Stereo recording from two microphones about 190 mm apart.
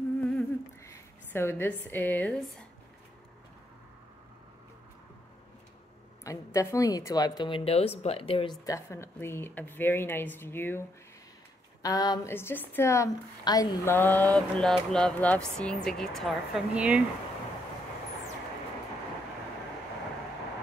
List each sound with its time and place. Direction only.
0.3 s a sound: 15° left (ahead or behind)
6.2 s a woman's voice: 15° left (ahead or behind)
8.6 s a woman's voice: 15° left (ahead or behind)
11.8 s a woman's voice: 20° left (ahead or behind); by 17.0 s 5° right (ahead or behind)